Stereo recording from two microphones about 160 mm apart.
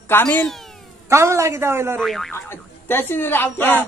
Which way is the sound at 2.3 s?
15° left (ahead or behind).